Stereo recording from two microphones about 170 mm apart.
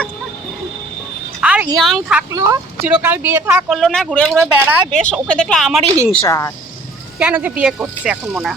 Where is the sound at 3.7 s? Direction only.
Centre (ahead or behind).